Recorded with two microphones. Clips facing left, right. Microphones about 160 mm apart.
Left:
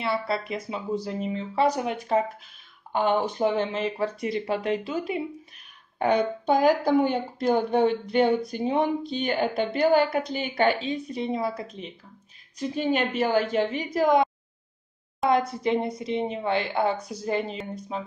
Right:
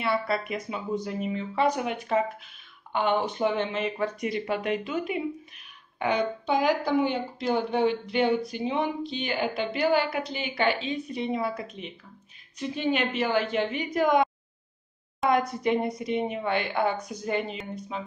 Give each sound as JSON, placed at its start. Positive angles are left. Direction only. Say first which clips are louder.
{"t": 0.0, "sound": "speech", "louder": "even", "side_deg": 25}
{"t": 5.9, "sound": "a woman's voice", "louder": "left 3 dB", "side_deg": 45}